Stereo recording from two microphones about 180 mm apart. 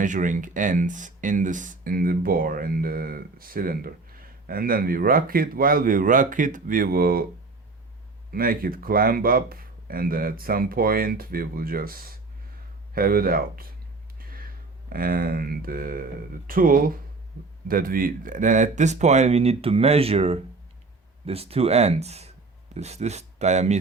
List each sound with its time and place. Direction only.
0.0 s speech: 45° right (ahead or behind)
8.3 s speech: 55° right (ahead or behind)
14.2 s a sound: 55° right (ahead or behind)
16.5 s speech: 50° right (ahead or behind)